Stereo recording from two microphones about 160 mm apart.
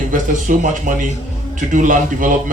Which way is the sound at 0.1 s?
55° right (ahead or behind).